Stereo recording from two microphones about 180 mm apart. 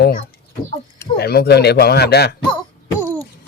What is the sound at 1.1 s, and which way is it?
Speech, 65° left (ahead or behind).